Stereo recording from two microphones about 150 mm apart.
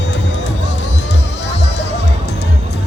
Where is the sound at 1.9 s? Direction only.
90° left.